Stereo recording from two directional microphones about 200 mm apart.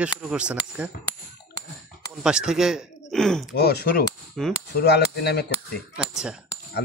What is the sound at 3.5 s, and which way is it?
Speech, 55° left (ahead or behind).